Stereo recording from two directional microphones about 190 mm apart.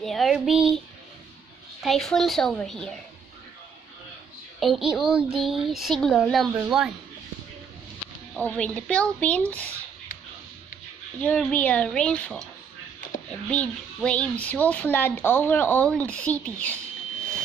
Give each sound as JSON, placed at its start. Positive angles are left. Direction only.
{"t": 0.0, "sound": "a woman's voice", "side_deg": 0}
{"t": 4.6, "sound": "a woman's voice", "side_deg": 0}
{"t": 8.4, "sound": "a child's voice", "side_deg": 10}
{"t": 11.2, "sound": "a woman's voice", "side_deg": 5}